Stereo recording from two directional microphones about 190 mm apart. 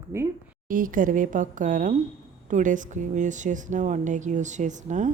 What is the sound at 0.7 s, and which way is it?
Speech, 45° right (ahead or behind).